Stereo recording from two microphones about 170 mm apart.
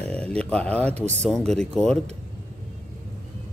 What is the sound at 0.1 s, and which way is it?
Speech, 5° left (ahead or behind).